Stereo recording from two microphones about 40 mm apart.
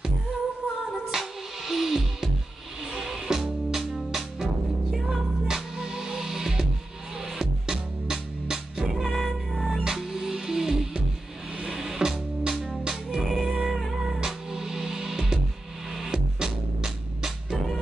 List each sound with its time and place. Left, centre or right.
1.7 s music: centre
5.5 s music: centre
9.1 s music: centre
9.8 s music: centre